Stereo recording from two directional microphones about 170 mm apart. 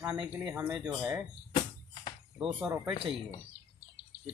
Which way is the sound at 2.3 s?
Centre (ahead or behind).